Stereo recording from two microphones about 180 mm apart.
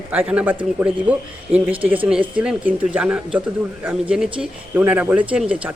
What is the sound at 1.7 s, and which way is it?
Speech, 10° right (ahead or behind).